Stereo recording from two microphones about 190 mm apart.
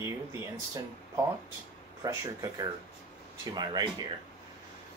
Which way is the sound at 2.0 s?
20° right (ahead or behind).